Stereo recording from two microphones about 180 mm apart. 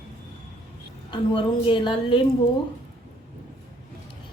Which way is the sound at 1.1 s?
25° left (ahead or behind).